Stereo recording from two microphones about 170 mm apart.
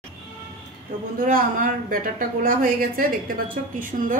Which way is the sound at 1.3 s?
55° right (ahead or behind).